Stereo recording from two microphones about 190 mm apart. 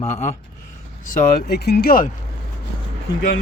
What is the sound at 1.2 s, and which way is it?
Speech, 50° left (ahead or behind).